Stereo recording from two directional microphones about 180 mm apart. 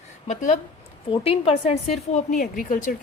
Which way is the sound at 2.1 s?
45° left (ahead or behind).